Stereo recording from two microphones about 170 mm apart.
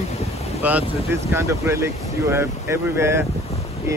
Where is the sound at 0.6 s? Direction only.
10° right (ahead or behind).